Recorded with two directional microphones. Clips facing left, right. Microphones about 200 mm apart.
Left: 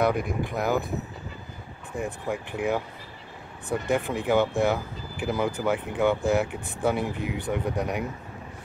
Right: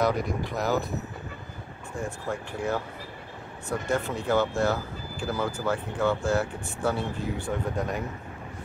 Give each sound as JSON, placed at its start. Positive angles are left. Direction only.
{"t": 0.2, "sound": "speech", "side_deg": 50}
{"t": 2.0, "sound": "speech", "side_deg": 15}
{"t": 3.9, "sound": "speech", "side_deg": 15}